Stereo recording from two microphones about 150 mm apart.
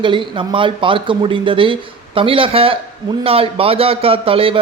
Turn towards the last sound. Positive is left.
turn(degrees=-35)  # may be behind; listen again after turning